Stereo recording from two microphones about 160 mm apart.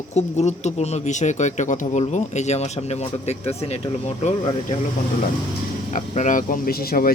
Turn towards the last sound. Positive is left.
turn(degrees=70)  # may be behind; listen again after turning